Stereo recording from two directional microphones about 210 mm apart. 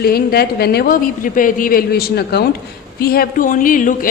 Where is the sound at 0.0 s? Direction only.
45° left (ahead or behind).